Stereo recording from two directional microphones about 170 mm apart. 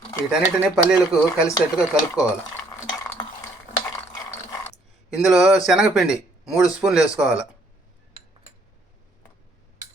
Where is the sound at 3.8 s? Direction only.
20° left (ahead or behind).